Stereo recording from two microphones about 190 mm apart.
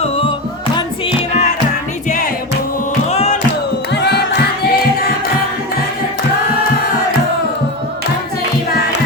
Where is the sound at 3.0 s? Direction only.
35° left (ahead or behind).